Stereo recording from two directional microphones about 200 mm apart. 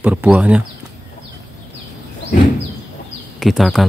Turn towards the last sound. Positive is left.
turn(degrees=0)  # may be behind; listen again after turning